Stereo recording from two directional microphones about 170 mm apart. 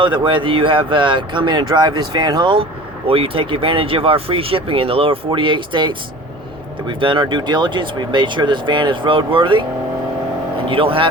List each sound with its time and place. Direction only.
0.0 s speech: 30° right (ahead or behind)
10.7 s speech: 30° right (ahead or behind)